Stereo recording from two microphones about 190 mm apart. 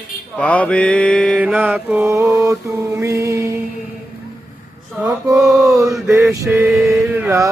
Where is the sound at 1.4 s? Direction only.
5° right (ahead or behind).